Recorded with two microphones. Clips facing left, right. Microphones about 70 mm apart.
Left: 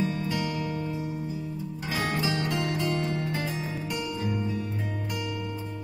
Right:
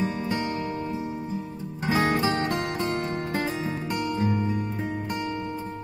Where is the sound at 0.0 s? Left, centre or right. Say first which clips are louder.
Right 1 dB; right.